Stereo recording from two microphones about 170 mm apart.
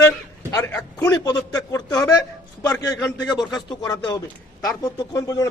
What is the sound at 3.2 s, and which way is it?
Speech, 25° left (ahead or behind).